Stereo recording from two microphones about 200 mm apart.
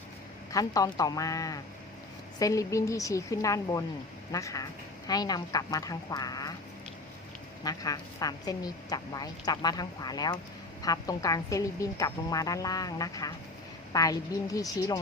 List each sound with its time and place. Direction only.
0.5 s a woman's voice: 20° left (ahead or behind)
7.6 s a woman's voice: 20° left (ahead or behind)